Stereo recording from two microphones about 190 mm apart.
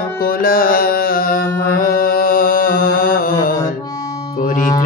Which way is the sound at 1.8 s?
50° left (ahead or behind).